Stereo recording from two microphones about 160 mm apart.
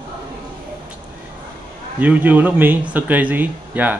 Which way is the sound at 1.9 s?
10° right (ahead or behind).